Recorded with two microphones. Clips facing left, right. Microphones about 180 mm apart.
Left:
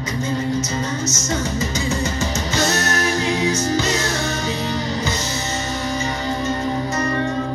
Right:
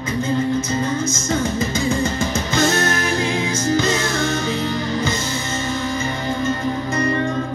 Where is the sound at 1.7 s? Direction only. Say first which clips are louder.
Right 2 dB; 55° right (ahead or behind).